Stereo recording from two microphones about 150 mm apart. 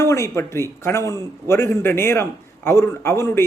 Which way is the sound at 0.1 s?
20° left (ahead or behind).